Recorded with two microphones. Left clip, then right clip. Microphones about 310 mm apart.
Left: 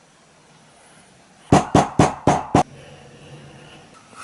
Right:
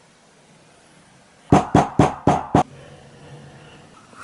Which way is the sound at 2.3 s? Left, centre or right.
Centre.